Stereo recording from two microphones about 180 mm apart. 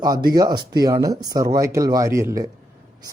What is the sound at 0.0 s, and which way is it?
Speech, 20° right (ahead or behind).